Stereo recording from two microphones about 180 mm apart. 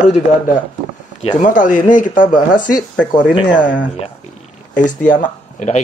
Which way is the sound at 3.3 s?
25° left (ahead or behind).